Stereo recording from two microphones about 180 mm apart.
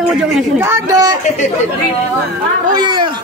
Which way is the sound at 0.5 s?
15° right (ahead or behind).